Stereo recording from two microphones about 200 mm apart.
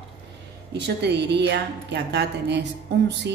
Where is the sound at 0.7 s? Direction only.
55° right (ahead or behind).